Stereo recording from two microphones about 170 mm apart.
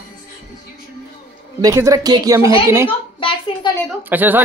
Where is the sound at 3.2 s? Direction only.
30° left (ahead or behind).